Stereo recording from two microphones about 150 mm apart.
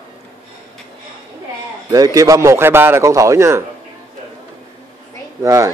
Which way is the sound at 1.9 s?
25° right (ahead or behind).